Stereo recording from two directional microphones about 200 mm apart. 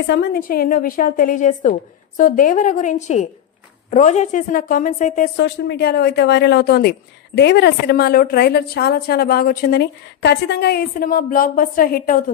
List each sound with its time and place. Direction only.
0.0 s a woman's voice: 55° left (ahead or behind); by 5.3 s 40° left (ahead or behind)
5.4 s speech: 55° left (ahead or behind)